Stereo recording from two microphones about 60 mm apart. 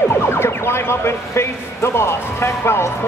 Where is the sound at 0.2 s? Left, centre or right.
Left.